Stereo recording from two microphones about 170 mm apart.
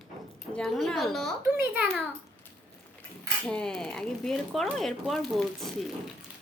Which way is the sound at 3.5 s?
5° left (ahead or behind).